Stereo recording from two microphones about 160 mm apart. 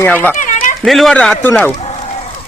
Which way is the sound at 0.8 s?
Centre (ahead or behind).